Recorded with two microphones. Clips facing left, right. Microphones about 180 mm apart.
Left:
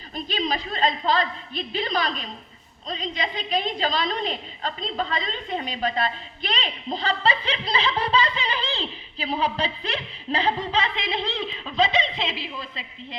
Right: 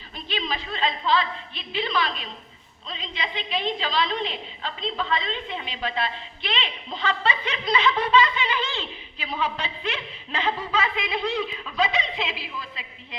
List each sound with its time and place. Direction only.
0.3 s a woman's voice: 40° left (ahead or behind)